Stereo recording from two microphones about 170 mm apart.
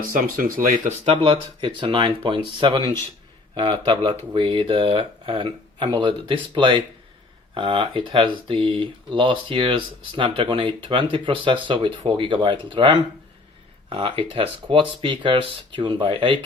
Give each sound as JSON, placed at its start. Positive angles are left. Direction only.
{"t": 0.0, "sound": "speech", "side_deg": -55}
{"t": 1.0, "sound": "speech", "side_deg": -30}